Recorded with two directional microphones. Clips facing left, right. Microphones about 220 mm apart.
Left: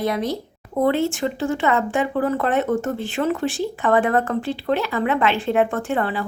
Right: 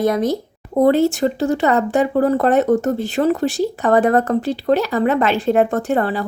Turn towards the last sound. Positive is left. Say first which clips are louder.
# right 5 dB
turn(degrees=-40)  # may be behind; listen again after turning